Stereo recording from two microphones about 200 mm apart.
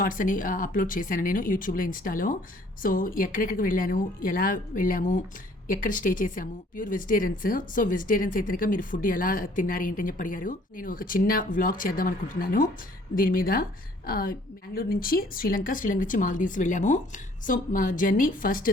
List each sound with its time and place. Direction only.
0.0 s speech: 40° left (ahead or behind)